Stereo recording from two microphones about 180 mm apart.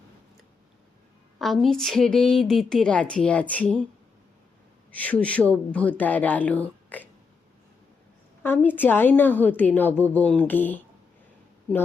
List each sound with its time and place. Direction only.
1.4 s a woman's voice: centre (ahead or behind)
4.9 s speech: 10° left (ahead or behind)
8.4 s speech: 10° left (ahead or behind)